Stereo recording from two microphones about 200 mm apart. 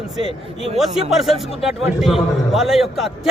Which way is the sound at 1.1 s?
Centre (ahead or behind).